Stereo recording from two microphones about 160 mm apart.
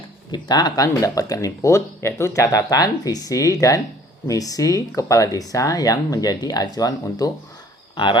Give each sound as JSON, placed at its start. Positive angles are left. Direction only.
{"t": 0.3, "sound": "speech", "side_deg": 25}